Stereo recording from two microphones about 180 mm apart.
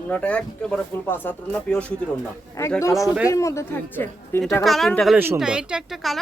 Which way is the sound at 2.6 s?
15° left (ahead or behind).